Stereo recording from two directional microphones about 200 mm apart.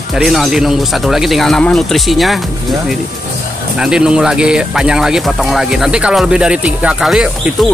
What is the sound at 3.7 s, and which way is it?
Speech, 5° right (ahead or behind).